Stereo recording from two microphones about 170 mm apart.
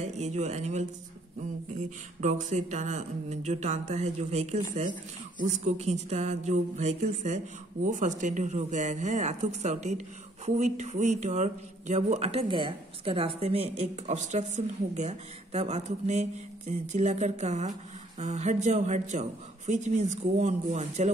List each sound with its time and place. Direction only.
0.0 s speech: 40° right (ahead or behind)
2.2 s speech: 45° right (ahead or behind)